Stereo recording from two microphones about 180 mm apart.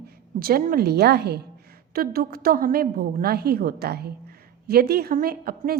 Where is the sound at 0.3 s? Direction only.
55° right (ahead or behind).